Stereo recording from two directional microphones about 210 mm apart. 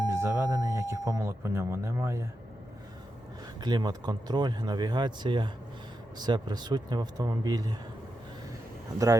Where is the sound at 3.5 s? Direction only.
20° right (ahead or behind).